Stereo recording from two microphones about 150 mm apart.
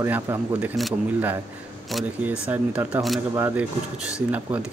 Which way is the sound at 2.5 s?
10° right (ahead or behind).